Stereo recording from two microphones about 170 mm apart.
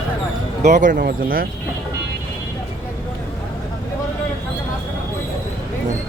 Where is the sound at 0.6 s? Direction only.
45° right (ahead or behind).